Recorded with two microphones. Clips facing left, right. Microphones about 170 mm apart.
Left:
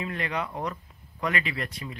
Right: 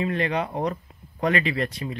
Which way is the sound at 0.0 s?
30° right (ahead or behind).